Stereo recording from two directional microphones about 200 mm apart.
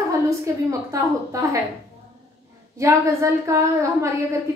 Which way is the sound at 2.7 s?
15° right (ahead or behind).